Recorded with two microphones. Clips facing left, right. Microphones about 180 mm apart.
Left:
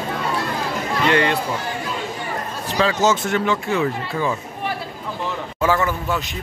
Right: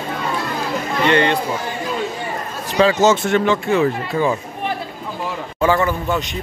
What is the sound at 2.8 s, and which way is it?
Speech, 20° right (ahead or behind).